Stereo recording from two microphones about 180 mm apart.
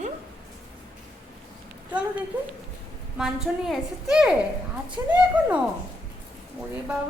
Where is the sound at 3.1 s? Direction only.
5° right (ahead or behind).